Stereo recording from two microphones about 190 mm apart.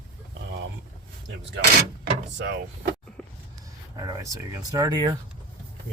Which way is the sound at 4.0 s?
15° right (ahead or behind).